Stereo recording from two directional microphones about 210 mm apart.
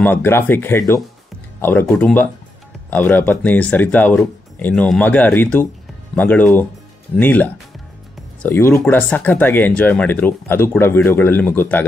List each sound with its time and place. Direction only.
0.0 s speech: 10° left (ahead or behind)